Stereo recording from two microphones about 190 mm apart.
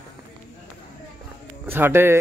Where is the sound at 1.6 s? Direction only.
10° right (ahead or behind).